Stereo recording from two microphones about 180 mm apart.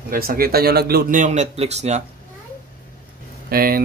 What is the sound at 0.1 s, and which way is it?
A man's voice, 55° right (ahead or behind).